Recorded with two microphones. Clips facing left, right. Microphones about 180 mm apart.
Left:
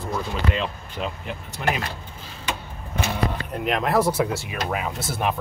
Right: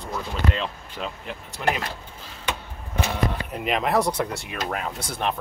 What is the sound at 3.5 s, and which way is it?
Speech, centre (ahead or behind).